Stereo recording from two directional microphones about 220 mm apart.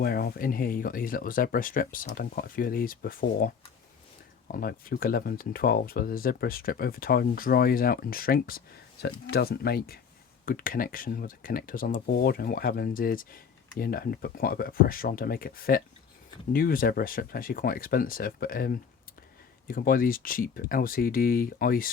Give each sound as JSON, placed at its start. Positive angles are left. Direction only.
{"t": 0.0, "sound": "speech", "side_deg": 45}
{"t": 4.5, "sound": "speech", "side_deg": 40}